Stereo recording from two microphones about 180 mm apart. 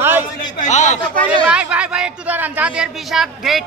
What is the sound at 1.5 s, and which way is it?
Speech, 5° right (ahead or behind).